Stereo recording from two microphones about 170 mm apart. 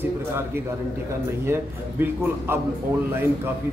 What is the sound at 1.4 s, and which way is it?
A man's voice, 15° right (ahead or behind).